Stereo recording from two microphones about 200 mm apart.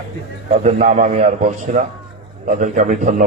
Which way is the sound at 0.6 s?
35° right (ahead or behind).